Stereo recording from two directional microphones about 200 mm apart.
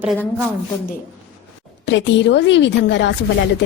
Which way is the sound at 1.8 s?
65° left (ahead or behind).